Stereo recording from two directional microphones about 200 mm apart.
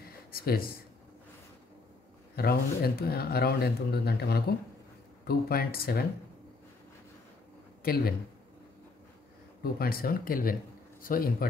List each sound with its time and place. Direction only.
0.0 s a sound: 50° left (ahead or behind)
2.3 s speech: 50° left (ahead or behind)
7.8 s a man's voice: 50° left (ahead or behind)
9.6 s speech: 50° left (ahead or behind)